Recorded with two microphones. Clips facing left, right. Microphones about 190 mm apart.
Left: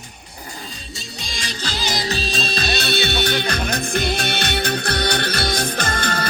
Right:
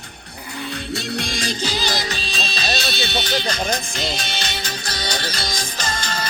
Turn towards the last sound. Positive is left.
turn(degrees=60)  # may be behind; listen again after turning